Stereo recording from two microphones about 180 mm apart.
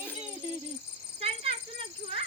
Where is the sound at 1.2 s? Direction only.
35° right (ahead or behind).